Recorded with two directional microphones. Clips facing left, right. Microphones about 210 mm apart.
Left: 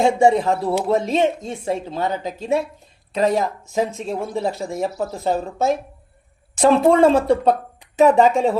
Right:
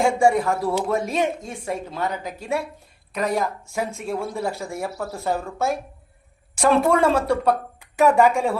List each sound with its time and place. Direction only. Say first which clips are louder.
0.0 s speech: left 3 dB; 20° left (ahead or behind)